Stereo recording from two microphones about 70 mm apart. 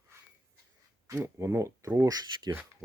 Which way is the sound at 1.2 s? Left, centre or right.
Right.